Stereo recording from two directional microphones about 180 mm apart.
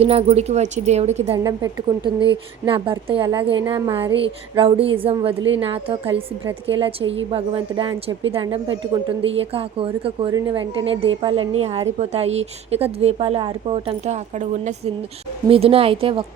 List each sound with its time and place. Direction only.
0.0 s a woman's voice: 35° right (ahead or behind)
1.5 s a woman's voice: 25° right (ahead or behind)